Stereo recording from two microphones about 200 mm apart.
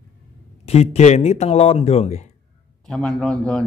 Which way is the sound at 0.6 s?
30° left (ahead or behind).